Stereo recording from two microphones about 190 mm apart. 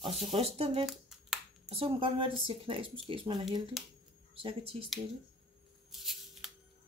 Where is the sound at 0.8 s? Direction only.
Centre (ahead or behind).